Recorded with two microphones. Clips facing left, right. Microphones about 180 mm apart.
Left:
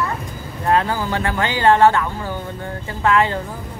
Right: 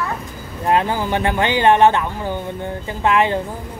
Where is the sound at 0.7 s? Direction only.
20° right (ahead or behind).